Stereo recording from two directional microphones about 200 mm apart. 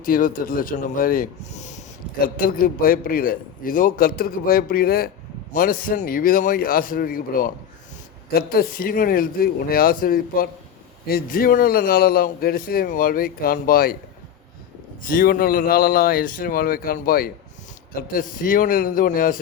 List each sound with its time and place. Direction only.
0.0 s a man's voice: 45° left (ahead or behind)
2.2 s a man's voice: 45° left (ahead or behind)
15.1 s a man's voice: 45° left (ahead or behind)